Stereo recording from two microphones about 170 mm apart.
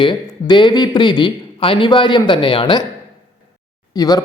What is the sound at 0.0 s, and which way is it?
A man's voice, 25° left (ahead or behind).